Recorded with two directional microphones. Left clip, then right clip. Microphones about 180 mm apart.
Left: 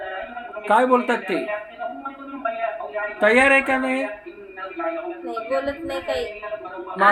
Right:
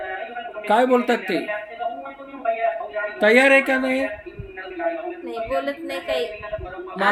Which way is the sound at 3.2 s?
30° right (ahead or behind).